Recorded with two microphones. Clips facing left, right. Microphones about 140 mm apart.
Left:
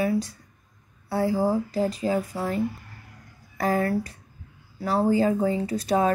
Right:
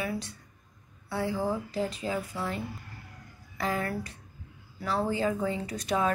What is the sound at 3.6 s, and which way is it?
Speech, 40° left (ahead or behind).